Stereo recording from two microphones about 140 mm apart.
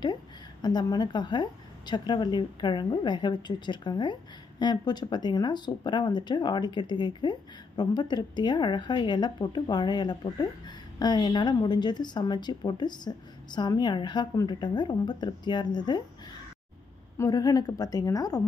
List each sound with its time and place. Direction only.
0.0 s a woman's voice: 30° left (ahead or behind)
17.2 s a woman's voice: 25° left (ahead or behind)